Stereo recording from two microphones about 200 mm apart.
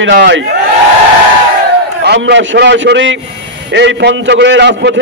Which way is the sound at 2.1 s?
60° right (ahead or behind).